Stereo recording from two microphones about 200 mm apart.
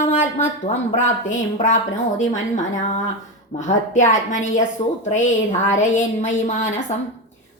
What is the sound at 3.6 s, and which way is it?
A woman's voice, 35° left (ahead or behind).